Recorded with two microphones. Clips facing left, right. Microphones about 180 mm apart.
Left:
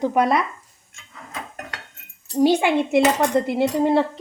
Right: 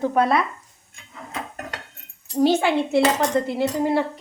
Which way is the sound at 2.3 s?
15° left (ahead or behind).